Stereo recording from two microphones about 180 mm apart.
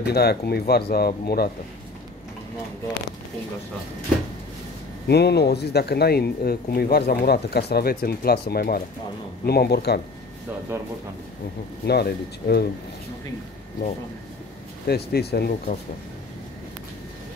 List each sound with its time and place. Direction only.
0.0 s speech: 60° left (ahead or behind)
5.0 s speech: 65° left (ahead or behind)
11.8 s speech: 65° left (ahead or behind)
14.9 s speech: 65° left (ahead or behind)